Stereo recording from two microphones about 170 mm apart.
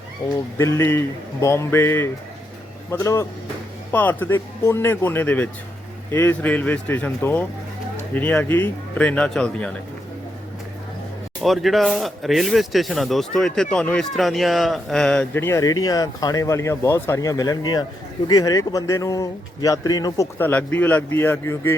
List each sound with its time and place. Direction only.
0.6 s speech: 15° left (ahead or behind)
11.4 s a man's voice: centre (ahead or behind); by 20.2 s 20° left (ahead or behind)
20.4 s speech: 10° left (ahead or behind)